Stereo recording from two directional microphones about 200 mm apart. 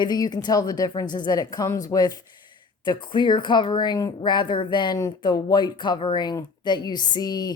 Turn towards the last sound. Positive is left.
turn(degrees=20)  # may be behind; listen again after turning